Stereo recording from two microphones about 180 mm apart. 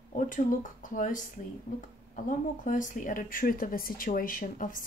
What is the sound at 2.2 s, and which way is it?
Speech, 45° left (ahead or behind).